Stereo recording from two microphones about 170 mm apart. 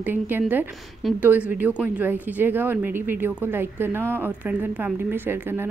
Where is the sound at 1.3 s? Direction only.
10° right (ahead or behind).